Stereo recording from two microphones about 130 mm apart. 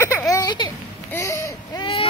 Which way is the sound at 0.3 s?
30° left (ahead or behind).